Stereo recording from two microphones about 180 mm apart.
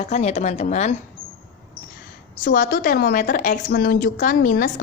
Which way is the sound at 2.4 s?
50° left (ahead or behind).